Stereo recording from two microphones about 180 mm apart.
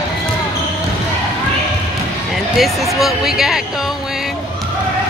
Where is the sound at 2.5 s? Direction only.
Centre (ahead or behind).